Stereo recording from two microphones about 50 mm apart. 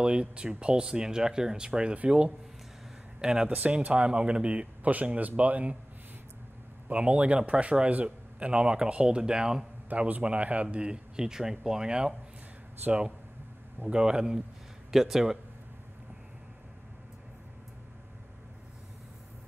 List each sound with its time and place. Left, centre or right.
0.0 s a man's voice: centre
3.2 s speech: centre
3.4 s a man's voice: right
6.9 s a man's voice: right
9.8 s a man's voice: right; by 12.1 s centre
13.9 s speech: centre